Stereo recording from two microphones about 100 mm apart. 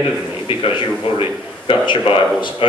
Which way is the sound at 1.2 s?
55° left (ahead or behind).